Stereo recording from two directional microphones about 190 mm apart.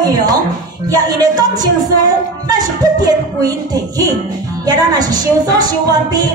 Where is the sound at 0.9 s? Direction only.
20° right (ahead or behind).